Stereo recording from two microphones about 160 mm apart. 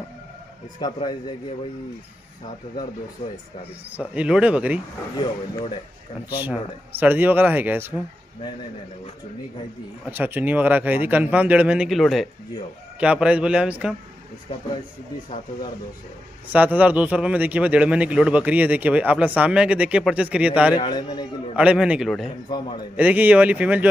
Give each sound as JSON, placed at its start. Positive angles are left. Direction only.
{"t": 3.9, "sound": "a man's voice", "side_deg": -10}
{"t": 5.1, "sound": "speech", "side_deg": 30}
{"t": 7.0, "sound": "a man's voice", "side_deg": -10}
{"t": 10.0, "sound": "a man's voice", "side_deg": -10}
{"t": 16.4, "sound": "a man's voice", "side_deg": -10}
{"t": 20.7, "sound": "speech", "side_deg": 30}
{"t": 21.5, "sound": "a man's voice", "side_deg": -5}